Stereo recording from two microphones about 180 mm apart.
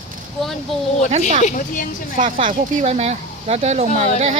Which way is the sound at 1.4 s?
45° left (ahead or behind).